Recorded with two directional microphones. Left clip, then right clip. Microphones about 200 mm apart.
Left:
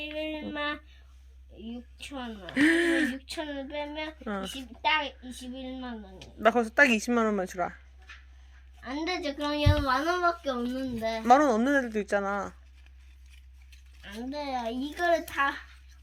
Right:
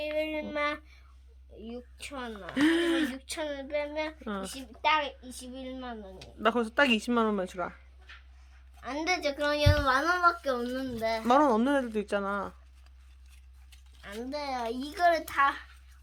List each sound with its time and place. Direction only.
0.0 s a sound: 20° right (ahead or behind)
2.0 s a child's voice: 15° right (ahead or behind)
2.6 s speech: centre (ahead or behind)
3.2 s a child's voice: 20° right (ahead or behind)
4.2 s speech: centre (ahead or behind)
4.8 s a child's voice: 20° right (ahead or behind)
6.4 s speech: centre (ahead or behind)
8.8 s a child's voice: 20° right (ahead or behind)
11.3 s speech: 5° right (ahead or behind)
14.0 s a child's voice: 15° right (ahead or behind)